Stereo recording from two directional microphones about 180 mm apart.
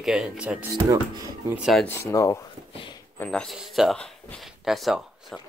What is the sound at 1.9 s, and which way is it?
Speech, 15° left (ahead or behind).